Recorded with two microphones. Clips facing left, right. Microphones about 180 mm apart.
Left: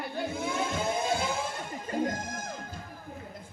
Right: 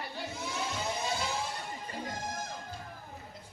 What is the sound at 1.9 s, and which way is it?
Music, 50° left (ahead or behind).